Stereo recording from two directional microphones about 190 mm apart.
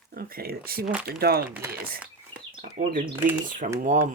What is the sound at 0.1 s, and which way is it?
Speech, 50° right (ahead or behind).